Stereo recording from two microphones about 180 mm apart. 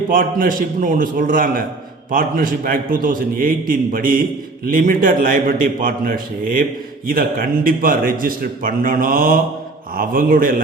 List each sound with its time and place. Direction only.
0.1 s a man's voice: 50° right (ahead or behind)